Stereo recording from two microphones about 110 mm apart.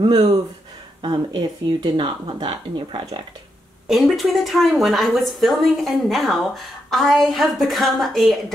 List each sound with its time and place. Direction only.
1.0 s speech: 45° right (ahead or behind)
3.8 s a woman's voice: 5° right (ahead or behind)